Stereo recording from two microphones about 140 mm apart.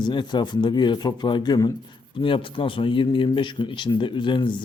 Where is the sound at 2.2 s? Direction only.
40° left (ahead or behind).